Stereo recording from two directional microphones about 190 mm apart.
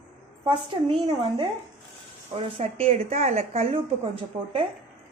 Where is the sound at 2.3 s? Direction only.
35° right (ahead or behind).